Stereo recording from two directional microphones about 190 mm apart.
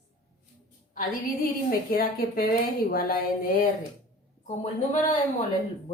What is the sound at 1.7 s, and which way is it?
Speech, 50° left (ahead or behind).